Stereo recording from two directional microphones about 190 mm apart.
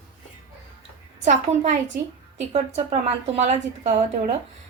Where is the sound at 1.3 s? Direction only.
40° right (ahead or behind).